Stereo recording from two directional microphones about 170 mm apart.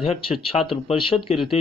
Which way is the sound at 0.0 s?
35° left (ahead or behind).